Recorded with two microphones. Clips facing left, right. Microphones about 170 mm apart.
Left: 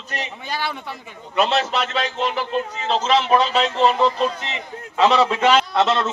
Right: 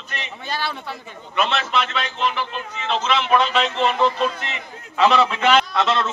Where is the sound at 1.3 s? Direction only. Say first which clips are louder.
Left 2 dB; 35° left (ahead or behind).